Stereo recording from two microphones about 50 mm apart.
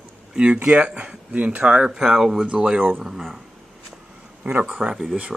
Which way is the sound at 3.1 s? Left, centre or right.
Centre.